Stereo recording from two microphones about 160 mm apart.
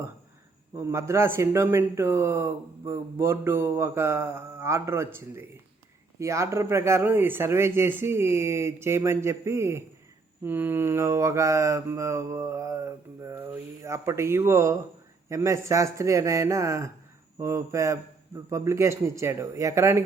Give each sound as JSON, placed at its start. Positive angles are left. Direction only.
{"t": 0.8, "sound": "a man's voice", "side_deg": -15}